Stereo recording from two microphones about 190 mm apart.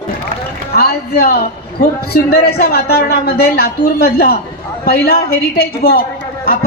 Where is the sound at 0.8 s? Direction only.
55° left (ahead or behind).